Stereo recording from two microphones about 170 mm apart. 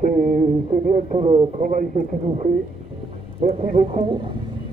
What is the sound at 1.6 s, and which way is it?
Speech, 50° right (ahead or behind).